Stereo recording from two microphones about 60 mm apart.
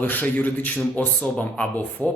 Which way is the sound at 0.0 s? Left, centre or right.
Left.